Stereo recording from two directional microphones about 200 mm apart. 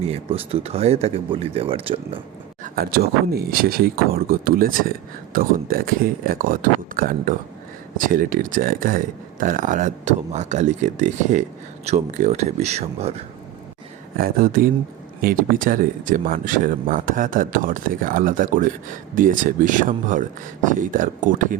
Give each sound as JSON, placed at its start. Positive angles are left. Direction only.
{"t": 0.0, "sound": "speech", "side_deg": -30}
{"t": 2.6, "sound": "speech", "side_deg": -50}
{"t": 14.2, "sound": "speech", "side_deg": -45}